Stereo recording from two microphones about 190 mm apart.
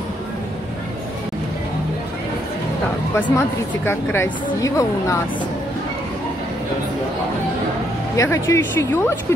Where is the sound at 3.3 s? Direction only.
10° left (ahead or behind).